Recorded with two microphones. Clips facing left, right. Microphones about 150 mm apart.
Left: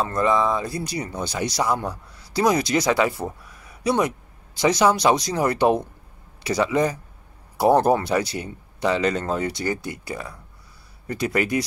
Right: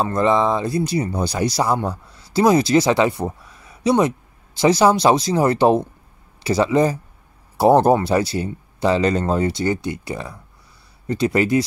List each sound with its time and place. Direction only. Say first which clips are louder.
0.0 s speech: right 3 dB; 25° right (ahead or behind)